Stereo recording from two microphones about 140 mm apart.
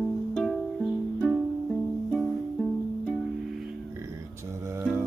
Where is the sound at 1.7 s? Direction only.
5° left (ahead or behind).